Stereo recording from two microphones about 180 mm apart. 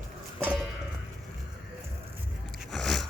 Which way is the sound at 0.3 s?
10° right (ahead or behind).